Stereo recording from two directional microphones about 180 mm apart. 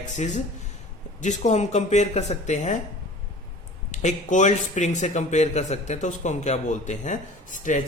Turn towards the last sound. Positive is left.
turn(degrees=45)  # may be behind; listen again after turning